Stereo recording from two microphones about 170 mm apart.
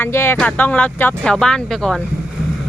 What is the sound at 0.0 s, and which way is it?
Speech, 15° left (ahead or behind).